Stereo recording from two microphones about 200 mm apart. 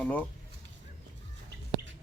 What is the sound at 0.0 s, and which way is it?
Speech, 5° left (ahead or behind).